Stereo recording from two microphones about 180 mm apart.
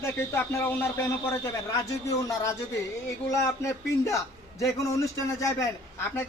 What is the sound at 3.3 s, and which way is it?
Speech, 15° left (ahead or behind).